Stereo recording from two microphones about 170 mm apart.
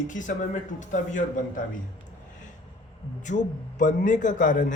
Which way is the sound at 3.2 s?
45° left (ahead or behind).